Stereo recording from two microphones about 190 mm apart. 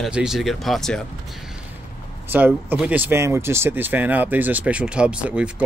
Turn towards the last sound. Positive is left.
turn(degrees=-5)  # may be behind; listen again after turning